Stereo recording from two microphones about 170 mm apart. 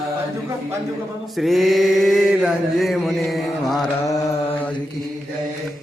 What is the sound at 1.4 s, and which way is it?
Chant, centre (ahead or behind).